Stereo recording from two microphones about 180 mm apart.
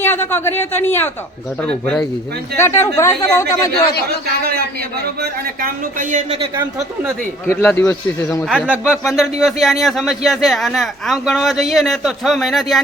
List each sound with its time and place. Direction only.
0.0 s speech: 15° left (ahead or behind)
5.2 s a man's voice: 50° right (ahead or behind)
6.6 s speech: 15° right (ahead or behind)
7.4 s speech: 10° left (ahead or behind)
8.4 s speech: 5° right (ahead or behind)